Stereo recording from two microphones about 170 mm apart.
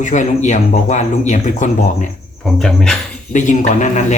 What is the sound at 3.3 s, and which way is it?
Speech, 45° left (ahead or behind).